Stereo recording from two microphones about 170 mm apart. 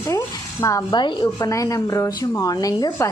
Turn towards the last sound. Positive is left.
turn(degrees=20)  # may be behind; listen again after turning